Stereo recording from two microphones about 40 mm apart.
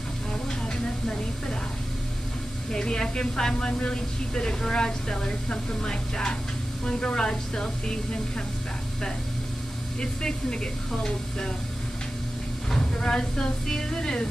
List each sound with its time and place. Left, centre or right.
2.7 s a woman's voice: centre
9.9 s a woman's voice: left
12.7 s speech: centre